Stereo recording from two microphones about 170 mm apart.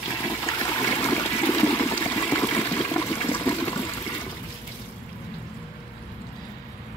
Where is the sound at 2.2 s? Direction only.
10° left (ahead or behind).